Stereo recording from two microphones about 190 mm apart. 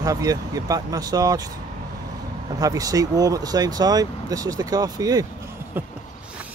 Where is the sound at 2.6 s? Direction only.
20° right (ahead or behind).